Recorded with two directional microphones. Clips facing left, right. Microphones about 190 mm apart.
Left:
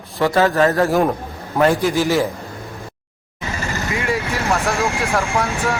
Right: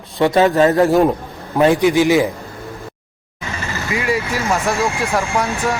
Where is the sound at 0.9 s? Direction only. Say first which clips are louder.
Right 4 dB; centre (ahead or behind).